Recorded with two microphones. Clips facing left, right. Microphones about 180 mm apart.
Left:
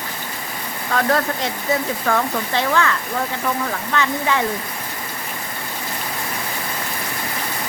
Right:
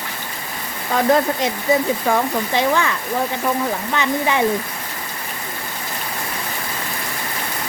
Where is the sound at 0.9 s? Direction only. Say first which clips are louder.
Right 3 dB; 20° right (ahead or behind).